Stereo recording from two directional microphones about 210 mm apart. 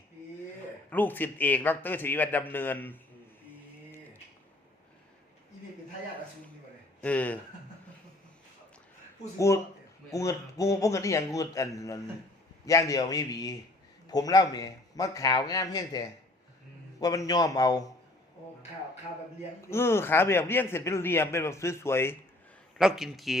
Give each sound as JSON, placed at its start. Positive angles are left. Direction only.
{"t": 0.9, "sound": "a man's voice", "side_deg": 10}
{"t": 7.0, "sound": "a man's voice", "side_deg": 5}
{"t": 10.1, "sound": "a man's voice", "side_deg": 15}
{"t": 19.6, "sound": "a man's voice", "side_deg": 10}
{"t": 22.8, "sound": "speech", "side_deg": 0}